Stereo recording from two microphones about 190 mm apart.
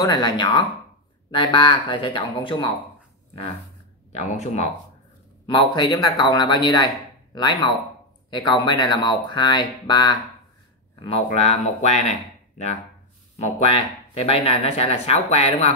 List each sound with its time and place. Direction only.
0.0 s speech: 20° left (ahead or behind)
4.1 s speech: 35° left (ahead or behind)
5.5 s speech: 25° left (ahead or behind)
11.2 s speech: 35° left (ahead or behind)